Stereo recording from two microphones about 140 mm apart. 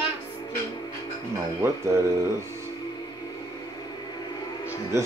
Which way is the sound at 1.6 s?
20° right (ahead or behind).